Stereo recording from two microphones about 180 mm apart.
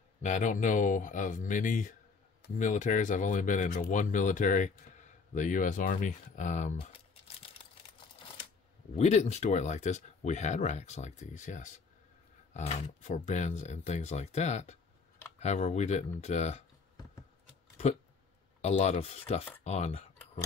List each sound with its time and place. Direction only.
0.2 s speech: 45° left (ahead or behind)
8.9 s speech: 40° left (ahead or behind)
18.6 s speech: 35° left (ahead or behind)